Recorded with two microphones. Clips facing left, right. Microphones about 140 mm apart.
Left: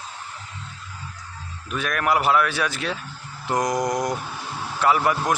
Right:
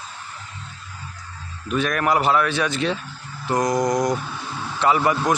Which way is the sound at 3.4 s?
15° left (ahead or behind).